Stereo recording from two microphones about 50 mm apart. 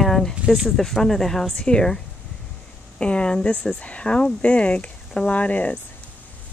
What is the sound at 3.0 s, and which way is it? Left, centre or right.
Speech, centre.